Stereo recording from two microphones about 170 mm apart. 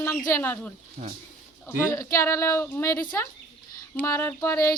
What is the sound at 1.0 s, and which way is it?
Speech, 35° right (ahead or behind).